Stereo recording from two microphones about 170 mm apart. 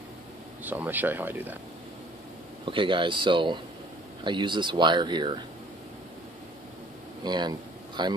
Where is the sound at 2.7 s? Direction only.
30° right (ahead or behind).